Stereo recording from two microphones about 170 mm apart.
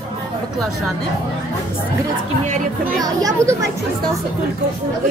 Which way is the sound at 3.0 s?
20° right (ahead or behind).